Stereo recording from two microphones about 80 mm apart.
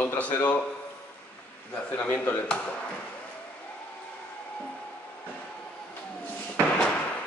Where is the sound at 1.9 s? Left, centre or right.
Left.